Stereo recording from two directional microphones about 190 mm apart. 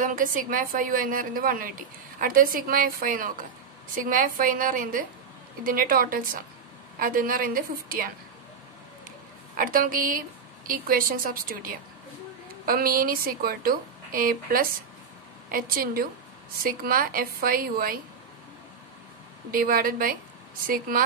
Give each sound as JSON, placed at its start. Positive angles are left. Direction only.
{"t": 0.0, "sound": "speech", "side_deg": -45}
{"t": 9.6, "sound": "speech", "side_deg": -50}
{"t": 19.5, "sound": "speech", "side_deg": -50}